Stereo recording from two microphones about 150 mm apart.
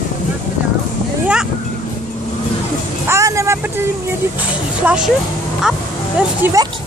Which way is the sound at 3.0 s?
20° right (ahead or behind).